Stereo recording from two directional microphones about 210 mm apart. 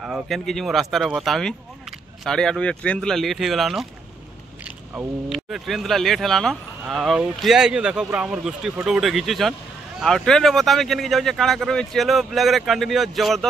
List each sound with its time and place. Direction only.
0.0 s speech: centre (ahead or behind)